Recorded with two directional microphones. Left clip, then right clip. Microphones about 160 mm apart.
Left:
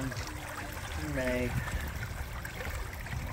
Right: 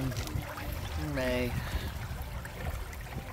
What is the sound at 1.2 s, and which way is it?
Speech, 15° right (ahead or behind).